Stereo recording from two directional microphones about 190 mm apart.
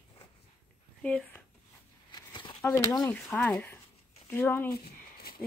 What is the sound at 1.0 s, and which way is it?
Speech, 5° left (ahead or behind).